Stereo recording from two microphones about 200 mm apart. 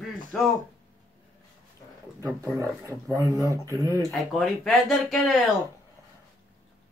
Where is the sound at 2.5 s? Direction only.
15° right (ahead or behind).